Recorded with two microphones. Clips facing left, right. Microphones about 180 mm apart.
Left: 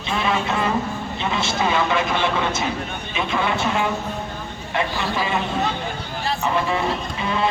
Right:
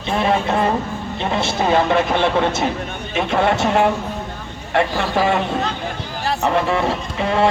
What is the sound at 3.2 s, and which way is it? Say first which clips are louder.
Speech: right 6 dB; 65° right (ahead or behind).